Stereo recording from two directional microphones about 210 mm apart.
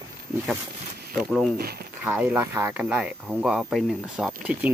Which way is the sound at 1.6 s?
45° right (ahead or behind).